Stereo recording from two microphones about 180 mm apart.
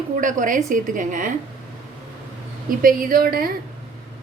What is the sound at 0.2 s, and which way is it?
A woman's voice, 45° right (ahead or behind).